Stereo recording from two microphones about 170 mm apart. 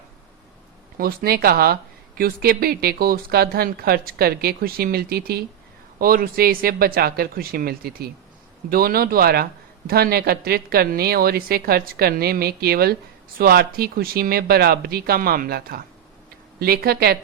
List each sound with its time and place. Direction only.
0.9 s speech: 60° right (ahead or behind)